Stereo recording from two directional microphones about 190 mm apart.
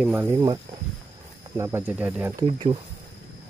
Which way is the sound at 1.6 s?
10° right (ahead or behind).